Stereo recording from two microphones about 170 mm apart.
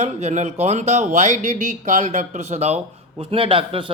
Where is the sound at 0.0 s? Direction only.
40° right (ahead or behind).